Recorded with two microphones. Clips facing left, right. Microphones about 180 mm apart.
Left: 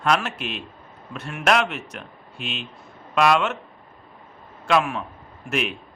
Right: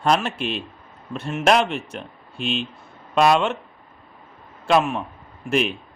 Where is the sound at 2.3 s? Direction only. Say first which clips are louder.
Right 7 dB; 5° left (ahead or behind).